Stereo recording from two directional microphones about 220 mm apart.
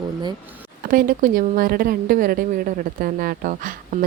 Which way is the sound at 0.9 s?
40° right (ahead or behind).